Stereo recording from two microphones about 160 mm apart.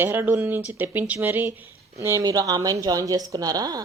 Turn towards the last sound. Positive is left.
turn(degrees=-25)  # may be behind; listen again after turning